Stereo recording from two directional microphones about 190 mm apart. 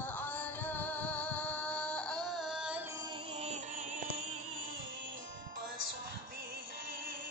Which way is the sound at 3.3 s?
35° right (ahead or behind).